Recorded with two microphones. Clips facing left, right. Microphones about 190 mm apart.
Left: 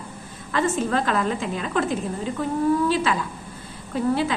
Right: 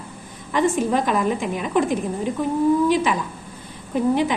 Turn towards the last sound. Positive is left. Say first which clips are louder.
# right 3 dB
turn(degrees=-20)  # may be behind; listen again after turning